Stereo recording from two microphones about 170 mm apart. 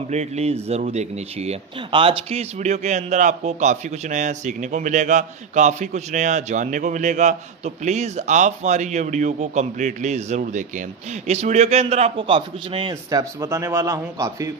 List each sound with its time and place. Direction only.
0.1 s a man's voice: 40° right (ahead or behind); by 14.5 s 20° right (ahead or behind)